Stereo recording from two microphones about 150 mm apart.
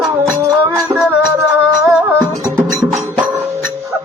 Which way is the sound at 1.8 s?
15° right (ahead or behind).